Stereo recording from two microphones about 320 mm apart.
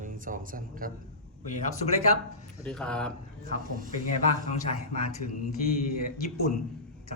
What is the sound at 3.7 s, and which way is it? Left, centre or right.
Speech, right.